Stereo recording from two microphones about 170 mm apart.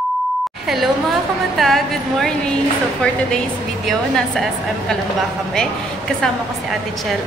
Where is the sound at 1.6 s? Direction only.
Centre (ahead or behind).